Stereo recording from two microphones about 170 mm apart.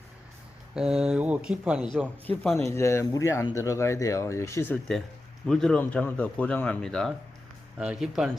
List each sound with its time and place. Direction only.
0.7 s speech: 5° right (ahead or behind)
2.2 s speech: 10° left (ahead or behind)
5.5 s speech: 5° left (ahead or behind)